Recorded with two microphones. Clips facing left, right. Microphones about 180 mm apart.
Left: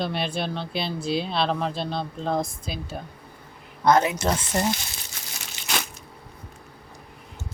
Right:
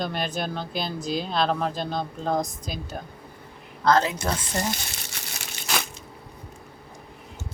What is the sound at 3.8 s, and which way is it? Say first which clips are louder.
Speech: left 2 dB; 20° left (ahead or behind).